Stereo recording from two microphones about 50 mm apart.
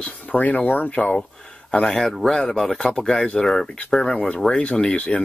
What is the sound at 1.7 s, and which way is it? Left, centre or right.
Speech, centre.